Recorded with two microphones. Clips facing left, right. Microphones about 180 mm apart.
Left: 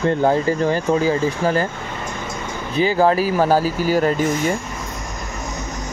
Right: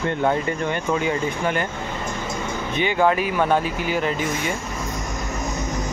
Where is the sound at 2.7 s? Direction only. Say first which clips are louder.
Left 4 dB; 35° left (ahead or behind).